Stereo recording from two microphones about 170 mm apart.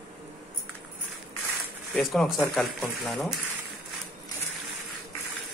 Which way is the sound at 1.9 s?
Centre (ahead or behind).